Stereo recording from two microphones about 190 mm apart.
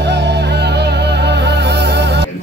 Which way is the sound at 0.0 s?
60° right (ahead or behind).